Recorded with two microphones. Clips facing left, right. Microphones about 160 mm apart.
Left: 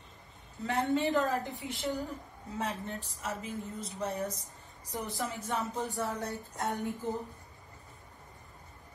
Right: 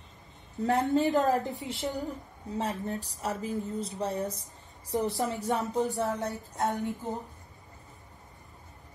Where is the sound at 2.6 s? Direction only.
35° right (ahead or behind).